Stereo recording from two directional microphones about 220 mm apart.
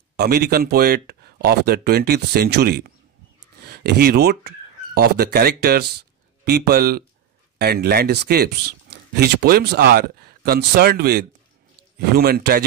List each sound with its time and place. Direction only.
0.1 s speech: 45° right (ahead or behind)